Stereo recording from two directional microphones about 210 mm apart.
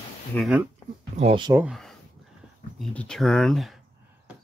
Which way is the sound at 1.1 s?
25° right (ahead or behind).